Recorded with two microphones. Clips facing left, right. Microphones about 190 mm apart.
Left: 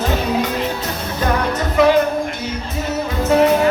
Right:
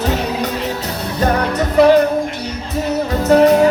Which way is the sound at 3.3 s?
40° right (ahead or behind).